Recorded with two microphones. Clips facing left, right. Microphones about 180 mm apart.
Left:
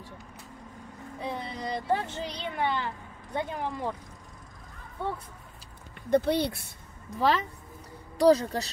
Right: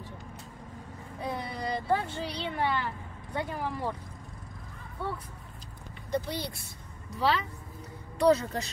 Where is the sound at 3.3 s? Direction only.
25° left (ahead or behind).